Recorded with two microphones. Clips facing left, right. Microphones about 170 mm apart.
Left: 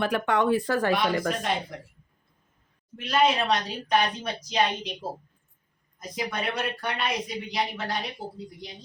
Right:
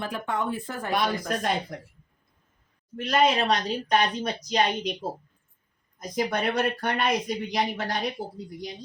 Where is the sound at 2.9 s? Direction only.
40° right (ahead or behind).